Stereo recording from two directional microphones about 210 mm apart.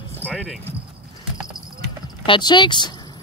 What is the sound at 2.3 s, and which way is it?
Speech, 20° left (ahead or behind).